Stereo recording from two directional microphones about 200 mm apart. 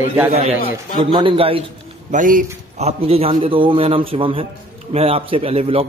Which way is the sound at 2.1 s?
40° right (ahead or behind).